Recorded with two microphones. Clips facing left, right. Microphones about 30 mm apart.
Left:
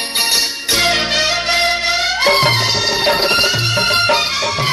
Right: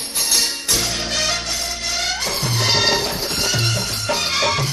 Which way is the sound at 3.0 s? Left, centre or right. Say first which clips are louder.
Left 9 dB; left.